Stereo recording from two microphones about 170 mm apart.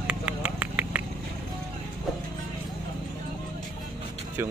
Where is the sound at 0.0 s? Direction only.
5° right (ahead or behind).